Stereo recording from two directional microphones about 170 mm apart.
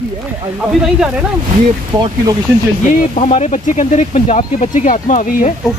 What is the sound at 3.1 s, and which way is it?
Speech, 40° left (ahead or behind).